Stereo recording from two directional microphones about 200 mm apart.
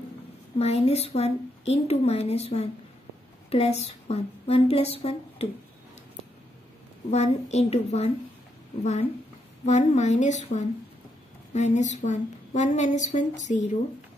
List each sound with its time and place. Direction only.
0.6 s a woman's voice: 30° left (ahead or behind)
7.1 s a woman's voice: 35° left (ahead or behind)
9.7 s a woman's voice: 35° left (ahead or behind)